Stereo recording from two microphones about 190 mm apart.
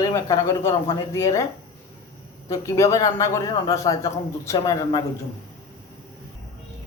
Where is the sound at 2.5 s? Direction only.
15° left (ahead or behind).